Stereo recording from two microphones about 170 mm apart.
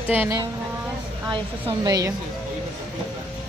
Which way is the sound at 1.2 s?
25° right (ahead or behind).